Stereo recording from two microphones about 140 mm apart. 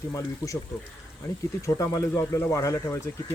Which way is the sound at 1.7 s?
20° left (ahead or behind).